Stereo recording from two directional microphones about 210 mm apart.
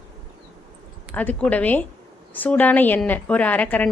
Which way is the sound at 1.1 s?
5° left (ahead or behind).